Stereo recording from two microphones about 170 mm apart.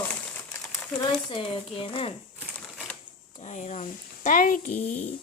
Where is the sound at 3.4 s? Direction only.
40° left (ahead or behind).